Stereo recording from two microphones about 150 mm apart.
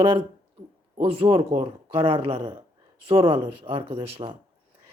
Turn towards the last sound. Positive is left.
turn(degrees=-40)  # may be behind; listen again after turning